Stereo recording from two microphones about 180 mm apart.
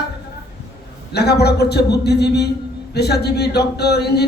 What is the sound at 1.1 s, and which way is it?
Speech, 65° left (ahead or behind).